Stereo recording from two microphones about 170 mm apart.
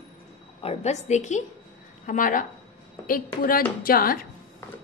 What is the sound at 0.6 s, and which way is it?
A woman's voice, 40° left (ahead or behind).